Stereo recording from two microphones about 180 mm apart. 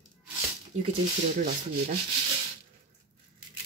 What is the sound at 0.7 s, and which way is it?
Speech, 90° right.